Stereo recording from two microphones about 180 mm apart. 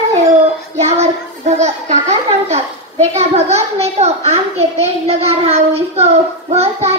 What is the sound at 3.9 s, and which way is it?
A child's voice, 35° right (ahead or behind).